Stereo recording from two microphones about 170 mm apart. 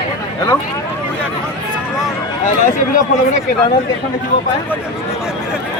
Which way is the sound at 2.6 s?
50° left (ahead or behind).